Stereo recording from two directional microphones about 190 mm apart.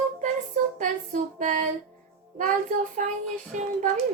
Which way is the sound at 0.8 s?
40° right (ahead or behind).